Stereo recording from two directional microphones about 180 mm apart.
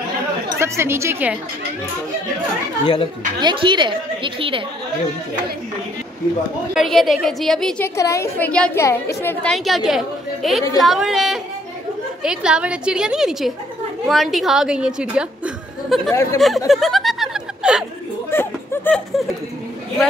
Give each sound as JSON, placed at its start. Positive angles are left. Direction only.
{"t": 0.6, "sound": "a woman's voice", "side_deg": -15}
{"t": 2.8, "sound": "speech", "side_deg": 25}
{"t": 3.3, "sound": "a woman's voice", "side_deg": -25}
{"t": 6.7, "sound": "a woman's voice", "side_deg": 0}
{"t": 7.9, "sound": "a woman's voice", "side_deg": 15}
{"t": 16.1, "sound": "a woman's voice", "side_deg": 15}
{"t": 16.3, "sound": "a sound", "side_deg": 0}
{"t": 18.3, "sound": "a sound", "side_deg": 10}